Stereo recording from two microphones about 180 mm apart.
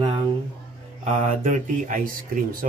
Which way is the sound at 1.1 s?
45° right (ahead or behind).